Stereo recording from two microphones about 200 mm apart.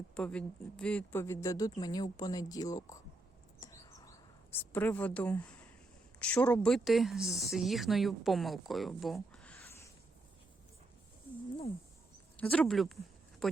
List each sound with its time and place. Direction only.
0.1 s speech: 5° left (ahead or behind)
3.6 s a sound: 15° left (ahead or behind)
4.5 s speech: 10° left (ahead or behind)
12.4 s speech: 5° left (ahead or behind)